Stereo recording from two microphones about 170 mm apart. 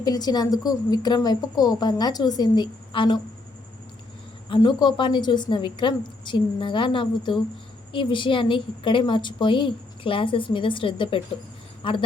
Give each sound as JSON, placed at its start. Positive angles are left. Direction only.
{"t": 0.0, "sound": "a woman's voice", "side_deg": 25}
{"t": 4.4, "sound": "a woman's voice", "side_deg": 30}